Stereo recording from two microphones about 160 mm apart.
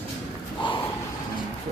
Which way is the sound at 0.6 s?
30° left (ahead or behind).